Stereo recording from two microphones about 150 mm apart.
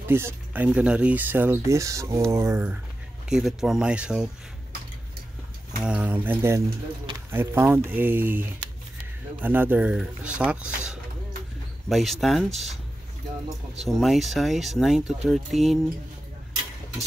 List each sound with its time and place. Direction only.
0.1 s speech: 15° right (ahead or behind)
3.3 s speech: 5° right (ahead or behind)
5.8 s speech: 10° right (ahead or behind)
13.8 s speech: centre (ahead or behind)